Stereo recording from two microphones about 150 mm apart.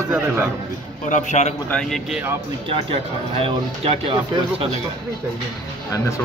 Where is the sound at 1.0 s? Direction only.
55° left (ahead or behind).